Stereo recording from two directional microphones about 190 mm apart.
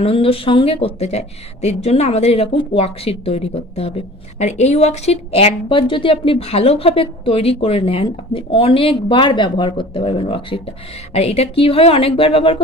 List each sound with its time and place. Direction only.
0.0 s a woman's voice: 30° left (ahead or behind)